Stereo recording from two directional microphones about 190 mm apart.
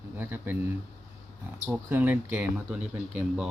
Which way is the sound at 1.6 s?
10° right (ahead or behind).